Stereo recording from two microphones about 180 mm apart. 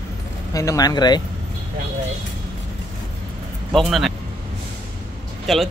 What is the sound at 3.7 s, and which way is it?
Speech, centre (ahead or behind).